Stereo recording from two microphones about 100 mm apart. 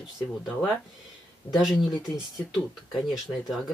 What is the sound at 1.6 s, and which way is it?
Speech, 5° right (ahead or behind).